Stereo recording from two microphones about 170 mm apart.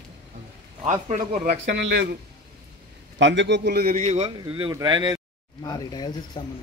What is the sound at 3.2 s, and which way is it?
Speech, 90° right.